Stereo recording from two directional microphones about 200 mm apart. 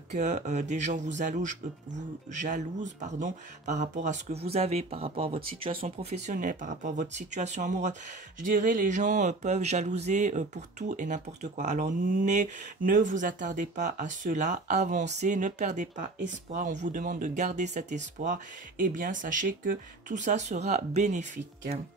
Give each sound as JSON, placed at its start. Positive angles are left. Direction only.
{"t": 0.1, "sound": "speech", "side_deg": -35}